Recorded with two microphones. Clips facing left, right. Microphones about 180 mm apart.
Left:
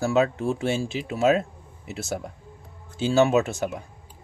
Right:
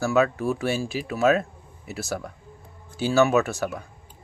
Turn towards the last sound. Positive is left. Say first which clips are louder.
# even
turn(degrees=20)  # may be behind; listen again after turning